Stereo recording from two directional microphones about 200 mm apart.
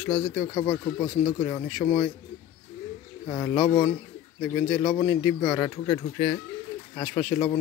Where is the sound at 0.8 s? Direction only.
20° left (ahead or behind).